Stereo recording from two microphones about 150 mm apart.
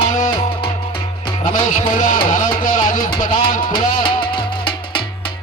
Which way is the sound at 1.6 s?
60° left (ahead or behind).